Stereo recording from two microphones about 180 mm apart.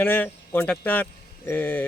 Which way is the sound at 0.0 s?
10° left (ahead or behind).